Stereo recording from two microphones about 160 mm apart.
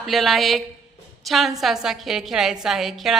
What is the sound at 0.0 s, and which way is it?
A woman's voice, centre (ahead or behind).